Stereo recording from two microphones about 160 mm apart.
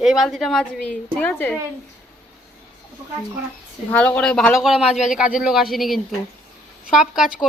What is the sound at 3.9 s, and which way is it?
Speech, 10° left (ahead or behind).